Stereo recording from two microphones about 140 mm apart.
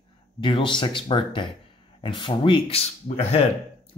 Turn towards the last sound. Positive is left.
turn(degrees=50)  # may be behind; listen again after turning